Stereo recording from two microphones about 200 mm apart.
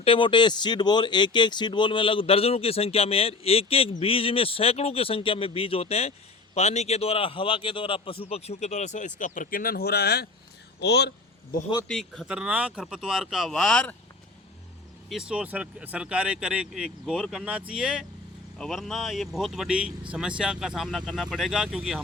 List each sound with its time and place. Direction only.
0.0 s speech: 25° left (ahead or behind); by 11.1 s 55° left (ahead or behind)
11.9 s speech: centre (ahead or behind)
15.1 s speech: 5° right (ahead or behind)